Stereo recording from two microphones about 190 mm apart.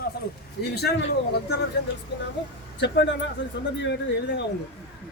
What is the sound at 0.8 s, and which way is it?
Speech, 55° left (ahead or behind).